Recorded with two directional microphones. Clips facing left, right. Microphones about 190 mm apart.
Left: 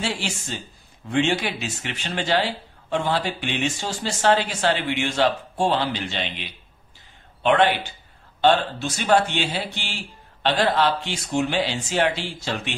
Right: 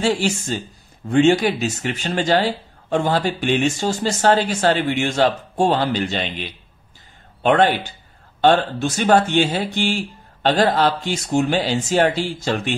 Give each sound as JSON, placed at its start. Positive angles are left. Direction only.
{"t": 0.0, "sound": "speech", "side_deg": -45}
{"t": 7.4, "sound": "speech", "side_deg": -45}